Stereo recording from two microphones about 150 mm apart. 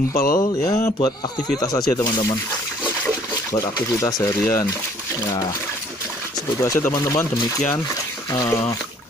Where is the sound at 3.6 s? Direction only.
25° left (ahead or behind).